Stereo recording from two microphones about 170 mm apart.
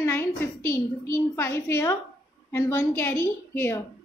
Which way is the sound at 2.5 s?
15° left (ahead or behind).